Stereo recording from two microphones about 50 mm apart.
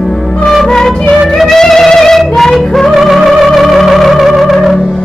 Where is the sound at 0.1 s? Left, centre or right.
Centre.